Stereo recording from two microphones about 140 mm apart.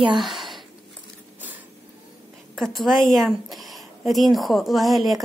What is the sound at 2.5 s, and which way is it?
A woman's voice, centre (ahead or behind).